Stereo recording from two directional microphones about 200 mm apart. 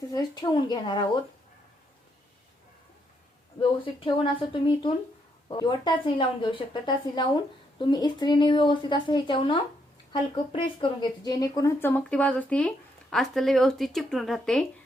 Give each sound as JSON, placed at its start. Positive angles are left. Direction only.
{"t": 0.1, "sound": "a woman's voice", "side_deg": 20}
{"t": 3.6, "sound": "a woman's voice", "side_deg": 25}